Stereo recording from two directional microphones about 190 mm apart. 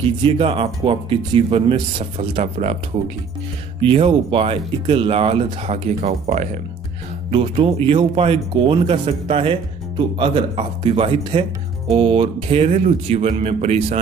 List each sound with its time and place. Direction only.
0.2 s speech: 25° right (ahead or behind)
3.8 s speech: 30° right (ahead or behind)